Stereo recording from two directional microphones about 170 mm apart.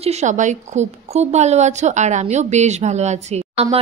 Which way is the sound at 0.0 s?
40° right (ahead or behind).